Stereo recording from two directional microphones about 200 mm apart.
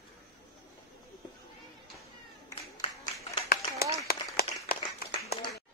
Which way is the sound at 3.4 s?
50° left (ahead or behind).